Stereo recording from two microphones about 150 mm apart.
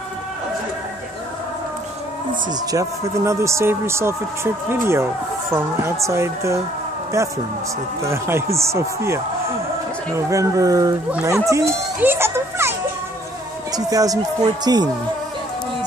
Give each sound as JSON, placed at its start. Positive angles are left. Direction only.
{"t": 2.7, "sound": "a child's voice", "side_deg": -20}
{"t": 13.7, "sound": "speech", "side_deg": -25}